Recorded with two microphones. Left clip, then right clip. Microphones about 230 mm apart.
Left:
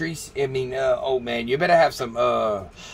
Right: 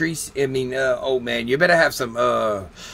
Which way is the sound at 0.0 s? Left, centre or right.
Right.